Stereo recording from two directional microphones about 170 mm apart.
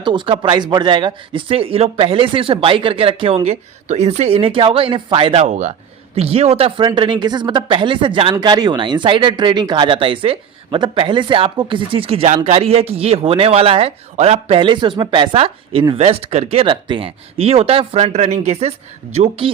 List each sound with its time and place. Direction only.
0.0 s speech: 30° right (ahead or behind)